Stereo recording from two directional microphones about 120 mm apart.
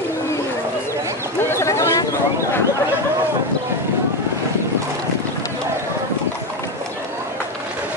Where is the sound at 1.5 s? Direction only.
25° left (ahead or behind).